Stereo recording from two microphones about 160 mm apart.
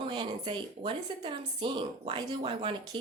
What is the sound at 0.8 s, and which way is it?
Speech, 30° right (ahead or behind).